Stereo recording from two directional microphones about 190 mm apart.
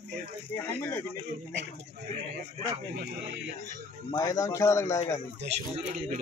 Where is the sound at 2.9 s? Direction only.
60° right (ahead or behind).